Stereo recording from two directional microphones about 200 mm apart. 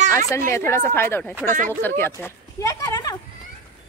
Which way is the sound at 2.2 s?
15° left (ahead or behind).